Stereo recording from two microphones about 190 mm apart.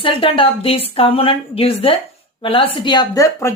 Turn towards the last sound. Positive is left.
turn(degrees=15)  # may be behind; listen again after turning